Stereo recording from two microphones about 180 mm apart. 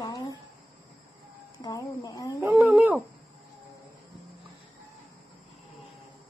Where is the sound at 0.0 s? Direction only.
20° left (ahead or behind).